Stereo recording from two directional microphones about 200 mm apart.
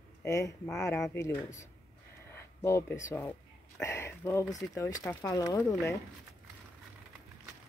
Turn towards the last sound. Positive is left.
turn(degrees=15)  # may be behind; listen again after turning